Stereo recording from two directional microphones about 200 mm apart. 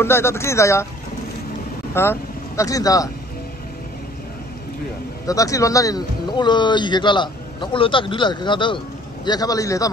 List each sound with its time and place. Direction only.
0.0 s speech: 10° left (ahead or behind)
2.0 s speech: 15° left (ahead or behind)
5.2 s speech: 15° left (ahead or behind)